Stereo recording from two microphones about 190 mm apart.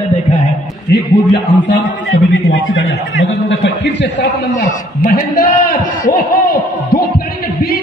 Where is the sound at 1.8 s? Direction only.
90° left; by 4.3 s 70° left (ahead or behind).